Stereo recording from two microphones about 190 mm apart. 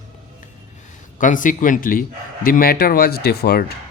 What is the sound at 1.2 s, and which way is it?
Speech, 45° left (ahead or behind).